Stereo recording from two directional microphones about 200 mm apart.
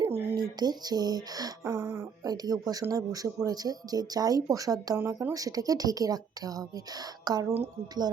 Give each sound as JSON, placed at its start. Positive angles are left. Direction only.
{"t": 0.0, "sound": "speech", "side_deg": -20}